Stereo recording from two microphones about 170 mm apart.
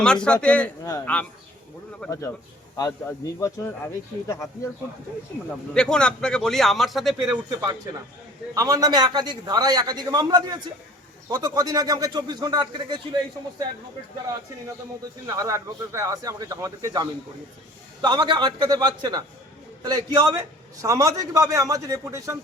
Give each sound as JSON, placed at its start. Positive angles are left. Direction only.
{"t": 0.0, "sound": "a man's voice", "side_deg": 5}
{"t": 0.9, "sound": "speech", "side_deg": 20}
{"t": 2.0, "sound": "a man's voice", "side_deg": 5}
{"t": 2.7, "sound": "a man's voice", "side_deg": 20}
{"t": 5.7, "sound": "a man's voice", "side_deg": 5}
{"t": 8.5, "sound": "a man's voice", "side_deg": -20}
{"t": 15.4, "sound": "a man's voice", "side_deg": -20}